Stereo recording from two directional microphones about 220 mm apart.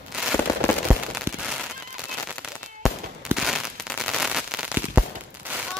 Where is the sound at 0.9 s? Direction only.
5° right (ahead or behind).